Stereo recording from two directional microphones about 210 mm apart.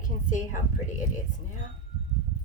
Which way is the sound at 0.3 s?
40° left (ahead or behind).